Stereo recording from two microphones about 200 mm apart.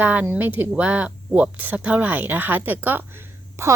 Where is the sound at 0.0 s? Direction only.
10° right (ahead or behind).